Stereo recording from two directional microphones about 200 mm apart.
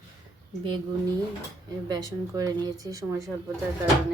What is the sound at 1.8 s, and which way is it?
Speech, 20° right (ahead or behind).